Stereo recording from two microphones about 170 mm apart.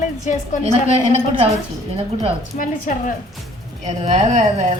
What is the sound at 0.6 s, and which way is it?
Speech, 40° right (ahead or behind).